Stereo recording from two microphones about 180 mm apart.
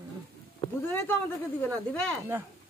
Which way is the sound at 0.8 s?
10° left (ahead or behind).